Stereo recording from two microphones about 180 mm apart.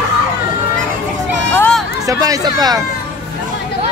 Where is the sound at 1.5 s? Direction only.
10° left (ahead or behind).